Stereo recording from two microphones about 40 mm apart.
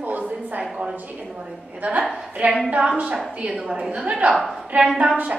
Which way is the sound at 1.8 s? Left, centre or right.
Right.